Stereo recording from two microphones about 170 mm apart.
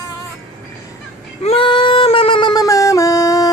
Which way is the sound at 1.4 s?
30° left (ahead or behind).